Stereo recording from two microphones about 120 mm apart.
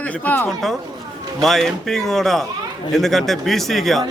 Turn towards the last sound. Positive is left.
turn(degrees=0)  # may be behind; listen again after turning